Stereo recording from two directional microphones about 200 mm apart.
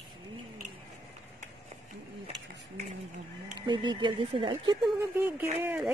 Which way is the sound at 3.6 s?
25° right (ahead or behind).